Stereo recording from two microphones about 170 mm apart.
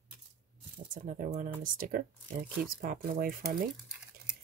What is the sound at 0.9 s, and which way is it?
Speech, 50° right (ahead or behind).